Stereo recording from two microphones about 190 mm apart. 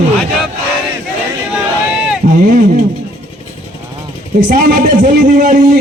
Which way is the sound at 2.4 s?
45° right (ahead or behind).